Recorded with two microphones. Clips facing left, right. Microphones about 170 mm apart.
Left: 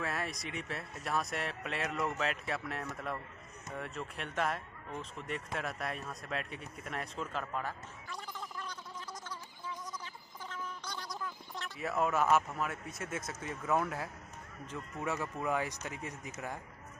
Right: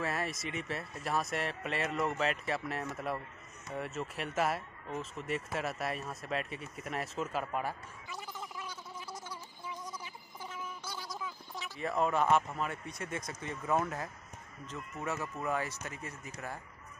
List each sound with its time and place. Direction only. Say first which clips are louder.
0.0 s speech: right 2 dB; centre (ahead or behind)
10.5 s a sound: left 1 dB; 5° right (ahead or behind)
13.3 s speech: even; 5° left (ahead or behind)